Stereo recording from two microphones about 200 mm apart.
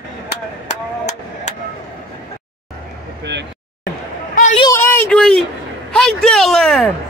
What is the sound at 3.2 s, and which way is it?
Vehicle, 60° right (ahead or behind).